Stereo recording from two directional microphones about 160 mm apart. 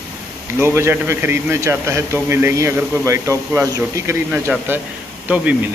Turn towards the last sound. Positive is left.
turn(degrees=-10)  # may be behind; listen again after turning